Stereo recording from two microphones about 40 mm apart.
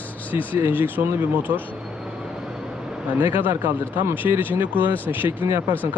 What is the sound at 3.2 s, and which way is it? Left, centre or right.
Speech, right.